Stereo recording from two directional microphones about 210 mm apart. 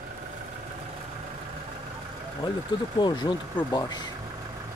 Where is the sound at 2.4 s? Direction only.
25° left (ahead or behind).